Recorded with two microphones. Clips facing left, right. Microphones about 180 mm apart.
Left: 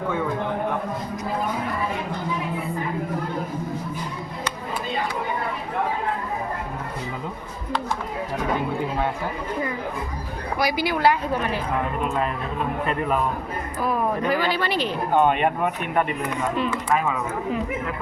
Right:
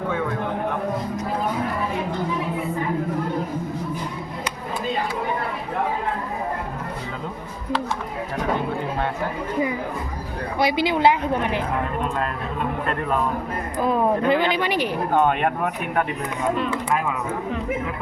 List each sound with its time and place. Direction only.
10.6 s a woman's voice: 25° right (ahead or behind)
13.7 s speech: 25° right (ahead or behind)
15.2 s speech: centre (ahead or behind)